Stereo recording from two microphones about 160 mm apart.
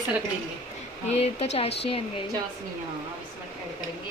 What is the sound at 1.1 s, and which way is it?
Speech, 40° left (ahead or behind).